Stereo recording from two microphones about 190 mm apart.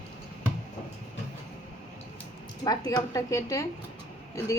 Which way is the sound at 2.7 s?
20° left (ahead or behind).